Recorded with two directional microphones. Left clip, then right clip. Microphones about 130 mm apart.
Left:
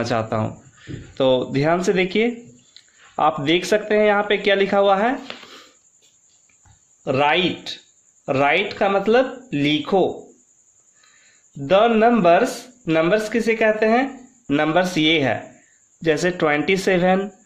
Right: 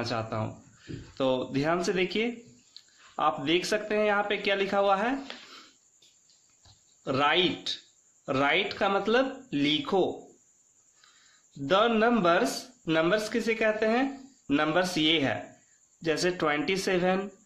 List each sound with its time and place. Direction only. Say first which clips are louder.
0.0 s speech: left 10 dB; 40° left (ahead or behind)
7.0 s a man's voice: left 7 dB; 20° left (ahead or behind)
11.6 s a man's voice: left 9 dB; 20° left (ahead or behind)